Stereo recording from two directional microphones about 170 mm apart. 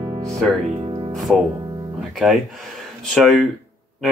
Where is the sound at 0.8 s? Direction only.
30° right (ahead or behind).